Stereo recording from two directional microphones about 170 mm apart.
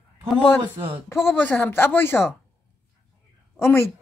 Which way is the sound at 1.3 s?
10° left (ahead or behind).